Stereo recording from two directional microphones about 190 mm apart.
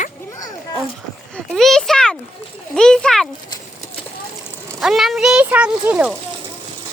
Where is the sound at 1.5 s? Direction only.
Centre (ahead or behind).